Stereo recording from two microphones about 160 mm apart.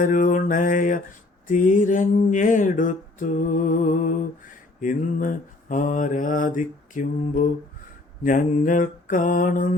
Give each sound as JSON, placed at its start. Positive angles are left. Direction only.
{"t": 0.0, "sound": "mantra", "side_deg": 55}
{"t": 1.5, "sound": "a sound", "side_deg": 55}
{"t": 4.8, "sound": "mantra", "side_deg": 55}